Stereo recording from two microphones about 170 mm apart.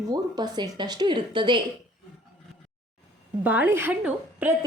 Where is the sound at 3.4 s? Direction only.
10° right (ahead or behind).